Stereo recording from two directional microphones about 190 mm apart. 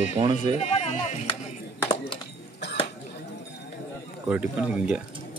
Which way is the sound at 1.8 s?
20° left (ahead or behind).